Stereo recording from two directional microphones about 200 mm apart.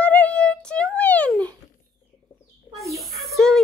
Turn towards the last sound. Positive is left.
turn(degrees=0)  # may be behind; listen again after turning